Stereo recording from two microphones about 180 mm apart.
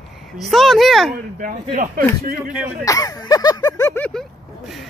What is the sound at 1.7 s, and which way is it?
Speech, 45° right (ahead or behind).